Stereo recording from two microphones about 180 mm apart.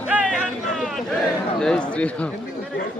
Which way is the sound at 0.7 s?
Centre (ahead or behind).